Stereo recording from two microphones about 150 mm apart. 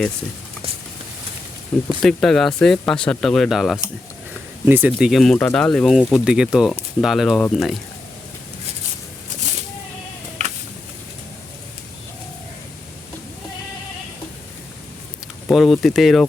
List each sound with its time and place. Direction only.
2.0 s speech: 5° left (ahead or behind)
4.6 s speech: 15° right (ahead or behind)
9.4 s a sound: 50° right (ahead or behind)
15.4 s speech: centre (ahead or behind)